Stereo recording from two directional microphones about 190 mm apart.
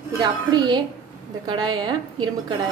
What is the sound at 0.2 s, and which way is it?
A woman's voice, 20° right (ahead or behind).